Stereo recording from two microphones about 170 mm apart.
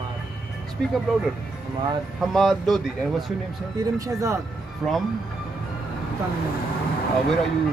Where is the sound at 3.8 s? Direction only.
20° right (ahead or behind).